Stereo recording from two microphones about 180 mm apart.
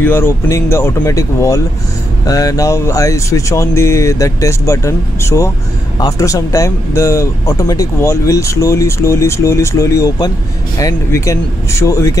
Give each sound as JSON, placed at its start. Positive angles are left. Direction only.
{"t": 0.0, "sound": "speech", "side_deg": 10}